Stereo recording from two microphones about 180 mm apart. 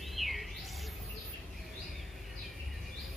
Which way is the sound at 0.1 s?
Centre (ahead or behind).